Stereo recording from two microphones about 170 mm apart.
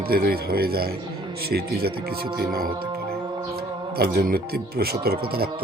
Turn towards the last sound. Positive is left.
turn(degrees=-65)  # may be behind; listen again after turning